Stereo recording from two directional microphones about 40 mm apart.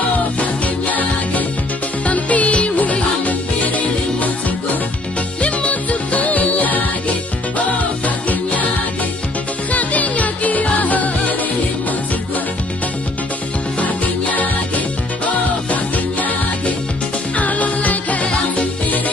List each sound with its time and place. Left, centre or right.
0.4 s music: left
5.4 s music: left
8.3 s music: left
9.7 s music: left
13.7 s music: left